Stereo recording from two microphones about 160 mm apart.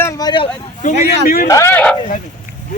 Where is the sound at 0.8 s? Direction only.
50° left (ahead or behind).